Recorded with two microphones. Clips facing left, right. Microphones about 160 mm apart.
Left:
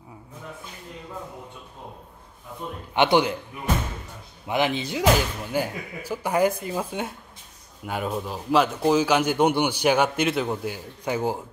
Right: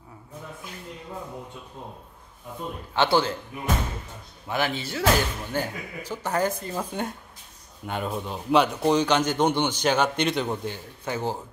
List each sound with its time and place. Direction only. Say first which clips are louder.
2.9 s a man's voice: left 3 dB; 15° left (ahead or behind)
4.5 s a man's voice: left 3 dB; 20° left (ahead or behind)